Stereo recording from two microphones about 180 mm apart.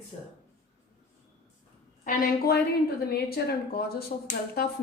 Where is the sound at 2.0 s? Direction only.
60° left (ahead or behind).